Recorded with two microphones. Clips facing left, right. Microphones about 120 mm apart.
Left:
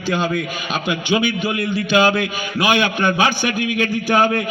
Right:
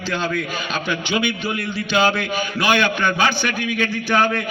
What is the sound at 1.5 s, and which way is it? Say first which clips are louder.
Speech: left 5 dB; 45° left (ahead or behind).